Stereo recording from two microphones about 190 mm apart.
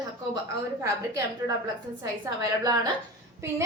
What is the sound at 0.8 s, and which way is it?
A woman's voice, 20° right (ahead or behind).